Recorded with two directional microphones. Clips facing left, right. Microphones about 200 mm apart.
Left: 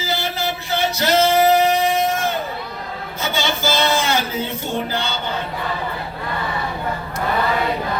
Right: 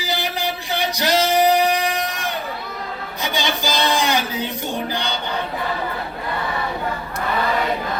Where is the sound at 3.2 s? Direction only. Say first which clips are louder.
Left 1 dB; 15° right (ahead or behind).